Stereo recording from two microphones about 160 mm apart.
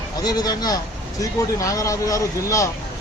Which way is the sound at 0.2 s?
25° left (ahead or behind).